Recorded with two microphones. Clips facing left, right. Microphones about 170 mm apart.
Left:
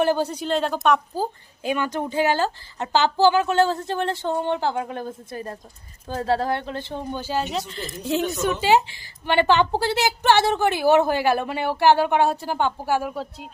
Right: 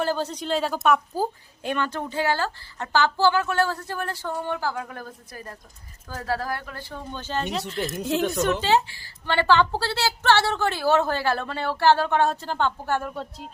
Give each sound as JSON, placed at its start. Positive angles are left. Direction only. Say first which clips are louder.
{"t": 0.0, "sound": "speech", "louder": "left 5 dB", "side_deg": 15}
{"t": 1.6, "sound": "speech", "louder": "left 3 dB", "side_deg": 10}
{"t": 7.1, "sound": "a woman's voice", "louder": "left 2 dB", "side_deg": 10}
{"t": 8.6, "sound": "a woman's voice", "louder": "left 3 dB", "side_deg": 15}